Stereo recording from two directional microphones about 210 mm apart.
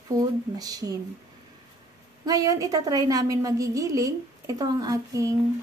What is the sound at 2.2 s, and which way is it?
A woman's voice, 15° right (ahead or behind).